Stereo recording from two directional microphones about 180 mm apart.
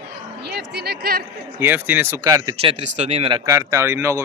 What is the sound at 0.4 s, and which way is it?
Speech, 70° right (ahead or behind).